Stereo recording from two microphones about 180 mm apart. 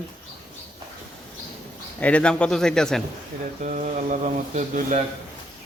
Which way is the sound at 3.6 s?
45° right (ahead or behind).